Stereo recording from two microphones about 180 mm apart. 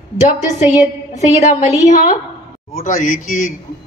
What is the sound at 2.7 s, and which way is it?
Speech, 45° left (ahead or behind).